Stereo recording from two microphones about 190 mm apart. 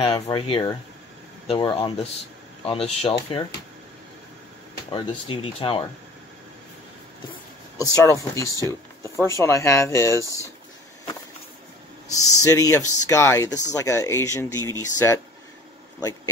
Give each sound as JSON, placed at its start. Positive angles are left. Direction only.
{"t": 0.0, "sound": "speech", "side_deg": 25}
{"t": 4.9, "sound": "speech", "side_deg": 25}
{"t": 7.7, "sound": "speech", "side_deg": 15}
{"t": 12.1, "sound": "speech", "side_deg": 20}